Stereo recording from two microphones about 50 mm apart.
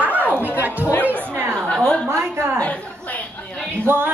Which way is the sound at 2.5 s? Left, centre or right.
Left.